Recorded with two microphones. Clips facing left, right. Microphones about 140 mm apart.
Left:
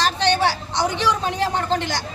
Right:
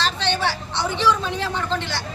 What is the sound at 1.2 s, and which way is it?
Speech, 55° left (ahead or behind).